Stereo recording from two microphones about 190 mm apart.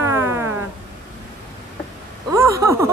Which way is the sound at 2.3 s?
15° right (ahead or behind).